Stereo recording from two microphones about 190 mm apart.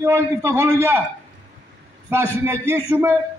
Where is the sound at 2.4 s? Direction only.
15° right (ahead or behind).